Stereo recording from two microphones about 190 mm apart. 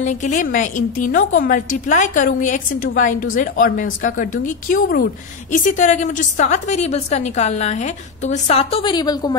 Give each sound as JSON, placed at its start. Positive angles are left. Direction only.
{"t": 0.0, "sound": "a woman's voice", "side_deg": 40}